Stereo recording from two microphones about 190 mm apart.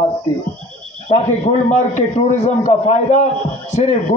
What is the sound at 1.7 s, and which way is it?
A man's voice, 35° left (ahead or behind).